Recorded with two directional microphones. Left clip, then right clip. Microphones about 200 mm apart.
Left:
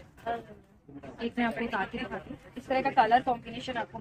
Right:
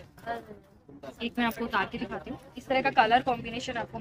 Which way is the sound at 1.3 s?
15° left (ahead or behind).